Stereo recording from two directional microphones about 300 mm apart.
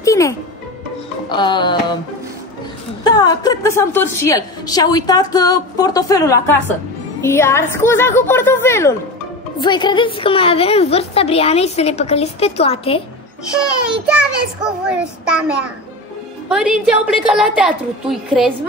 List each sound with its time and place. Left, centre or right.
0.0 s music: centre
1.3 s a woman's voice: centre
3.0 s a woman's voice: centre
14.6 s a woman's voice: centre